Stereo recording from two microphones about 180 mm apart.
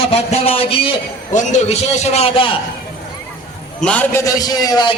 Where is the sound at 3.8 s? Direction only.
10° left (ahead or behind).